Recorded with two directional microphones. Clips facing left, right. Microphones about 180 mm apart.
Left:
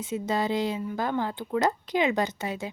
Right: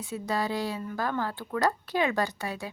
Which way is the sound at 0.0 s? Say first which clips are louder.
Left 3 dB; 20° left (ahead or behind).